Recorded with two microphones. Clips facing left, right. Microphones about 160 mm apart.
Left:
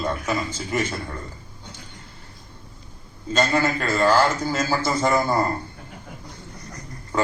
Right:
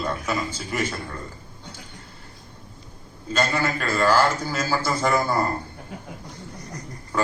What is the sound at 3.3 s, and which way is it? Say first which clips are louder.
A man's voice: left 3 dB; 20° left (ahead or behind).